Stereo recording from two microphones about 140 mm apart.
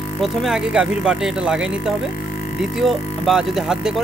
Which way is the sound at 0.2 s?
Centre (ahead or behind).